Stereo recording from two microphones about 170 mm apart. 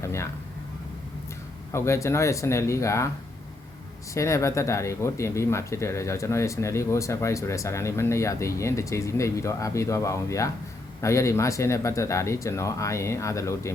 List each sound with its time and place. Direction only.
0.0 s speech: 15° left (ahead or behind)
1.7 s speech: 15° left (ahead or behind)
4.1 s speech: 15° left (ahead or behind)